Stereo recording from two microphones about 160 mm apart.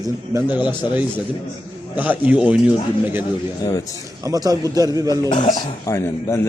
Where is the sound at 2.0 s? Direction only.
10° right (ahead or behind).